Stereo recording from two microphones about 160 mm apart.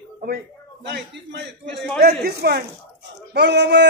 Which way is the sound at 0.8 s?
90° right.